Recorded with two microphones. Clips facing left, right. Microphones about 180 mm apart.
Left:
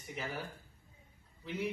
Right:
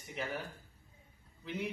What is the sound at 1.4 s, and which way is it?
Speech, centre (ahead or behind).